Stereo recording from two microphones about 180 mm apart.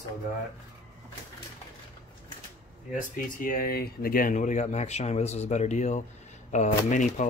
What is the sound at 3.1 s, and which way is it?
Speech, 50° left (ahead or behind).